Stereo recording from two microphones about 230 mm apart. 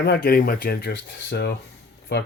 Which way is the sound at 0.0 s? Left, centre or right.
Left.